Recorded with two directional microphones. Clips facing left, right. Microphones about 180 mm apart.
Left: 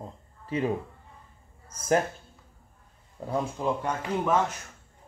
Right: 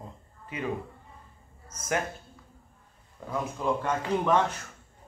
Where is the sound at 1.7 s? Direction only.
35° left (ahead or behind).